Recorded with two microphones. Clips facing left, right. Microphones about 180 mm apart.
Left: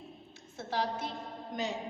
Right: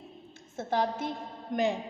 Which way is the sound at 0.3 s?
50° right (ahead or behind).